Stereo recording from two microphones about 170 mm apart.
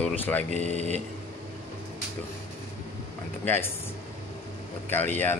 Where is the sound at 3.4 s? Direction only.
15° left (ahead or behind).